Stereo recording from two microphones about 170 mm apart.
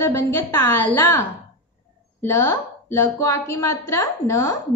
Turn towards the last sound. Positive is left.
turn(degrees=15)  # may be behind; listen again after turning